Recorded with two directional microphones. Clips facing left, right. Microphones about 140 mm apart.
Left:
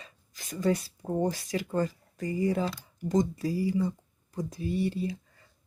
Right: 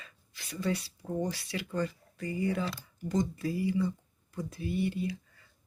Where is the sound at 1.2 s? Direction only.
45° left (ahead or behind).